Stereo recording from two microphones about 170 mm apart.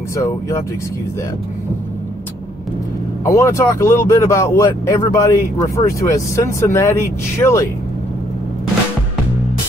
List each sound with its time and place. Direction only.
3.3 s speech: 15° left (ahead or behind)